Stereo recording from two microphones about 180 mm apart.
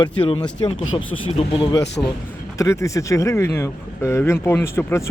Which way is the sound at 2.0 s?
15° left (ahead or behind).